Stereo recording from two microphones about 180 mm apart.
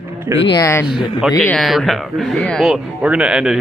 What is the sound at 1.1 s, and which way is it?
Speech, centre (ahead or behind).